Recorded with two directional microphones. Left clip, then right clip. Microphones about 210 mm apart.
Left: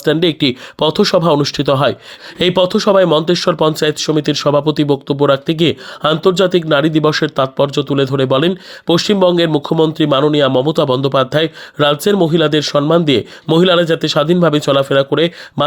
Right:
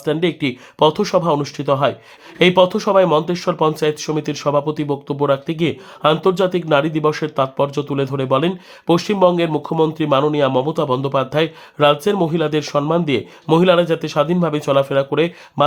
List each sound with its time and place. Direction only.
0.0 s speech: 30° left (ahead or behind)